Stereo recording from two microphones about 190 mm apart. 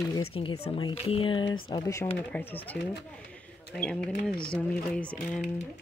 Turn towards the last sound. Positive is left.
turn(degrees=5)  # may be behind; listen again after turning